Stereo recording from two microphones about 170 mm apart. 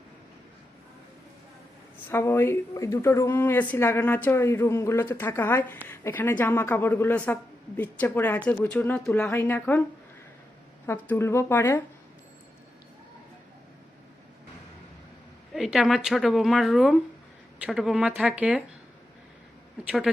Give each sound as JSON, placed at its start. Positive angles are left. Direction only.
{"t": 2.0, "sound": "speech", "side_deg": 15}
{"t": 10.8, "sound": "speech", "side_deg": 15}
{"t": 15.5, "sound": "a woman's voice", "side_deg": 0}